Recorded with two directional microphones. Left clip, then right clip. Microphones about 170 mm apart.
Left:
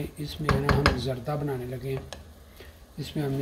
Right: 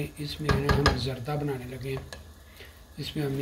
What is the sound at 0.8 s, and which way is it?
Speech, 30° left (ahead or behind).